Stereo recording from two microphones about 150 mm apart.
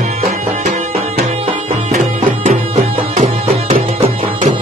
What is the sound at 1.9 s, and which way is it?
Music, 50° right (ahead or behind).